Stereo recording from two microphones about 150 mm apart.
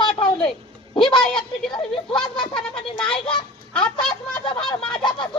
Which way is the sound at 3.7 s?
5° left (ahead or behind).